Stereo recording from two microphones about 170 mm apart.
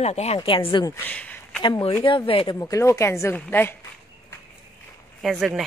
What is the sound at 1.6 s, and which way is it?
Speech, 30° left (ahead or behind).